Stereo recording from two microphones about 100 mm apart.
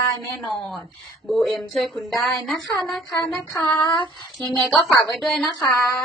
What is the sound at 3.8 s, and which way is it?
Speech, 50° left (ahead or behind).